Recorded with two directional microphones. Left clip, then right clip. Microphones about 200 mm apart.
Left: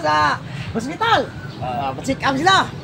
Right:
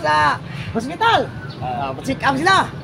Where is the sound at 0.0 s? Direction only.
25° right (ahead or behind).